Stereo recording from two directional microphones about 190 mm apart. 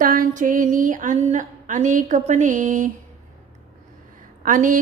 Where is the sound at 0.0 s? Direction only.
45° right (ahead or behind).